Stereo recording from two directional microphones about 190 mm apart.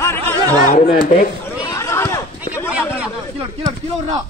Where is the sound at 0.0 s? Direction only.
10° left (ahead or behind).